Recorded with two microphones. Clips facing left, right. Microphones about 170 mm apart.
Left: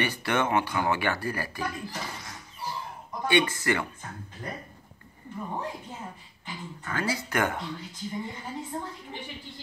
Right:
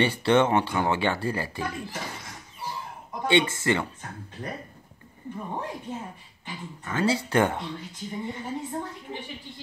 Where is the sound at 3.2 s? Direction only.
25° right (ahead or behind).